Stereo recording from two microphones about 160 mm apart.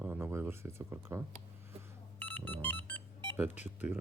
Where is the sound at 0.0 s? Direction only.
15° right (ahead or behind).